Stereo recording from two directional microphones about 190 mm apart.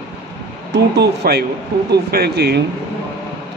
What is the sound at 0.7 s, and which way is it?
Speech, 60° right (ahead or behind).